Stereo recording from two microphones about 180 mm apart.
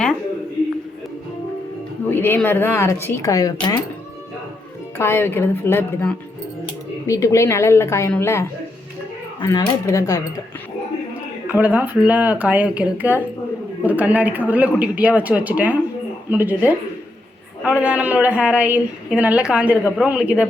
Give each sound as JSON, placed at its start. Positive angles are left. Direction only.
{"t": 2.0, "sound": "speech", "side_deg": 10}
{"t": 4.9, "sound": "speech", "side_deg": 15}
{"t": 11.4, "sound": "a woman's voice", "side_deg": -10}